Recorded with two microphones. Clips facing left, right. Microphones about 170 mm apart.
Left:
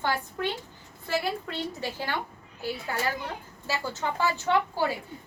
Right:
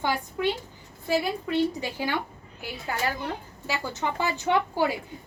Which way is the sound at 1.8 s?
15° right (ahead or behind).